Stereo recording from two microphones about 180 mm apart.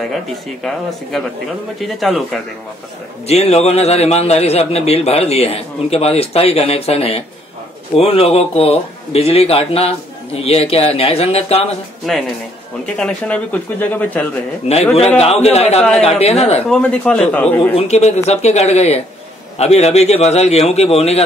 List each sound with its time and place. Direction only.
1.8 s speech: centre (ahead or behind)
3.3 s a man's voice: 35° left (ahead or behind)
12.1 s speech: centre (ahead or behind)
14.7 s a man's voice: 35° left (ahead or behind)
16.6 s speech: 5° left (ahead or behind)
17.7 s a man's voice: 35° left (ahead or behind)